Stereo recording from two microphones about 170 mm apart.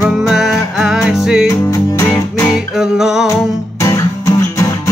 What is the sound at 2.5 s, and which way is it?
Music, 5° right (ahead or behind).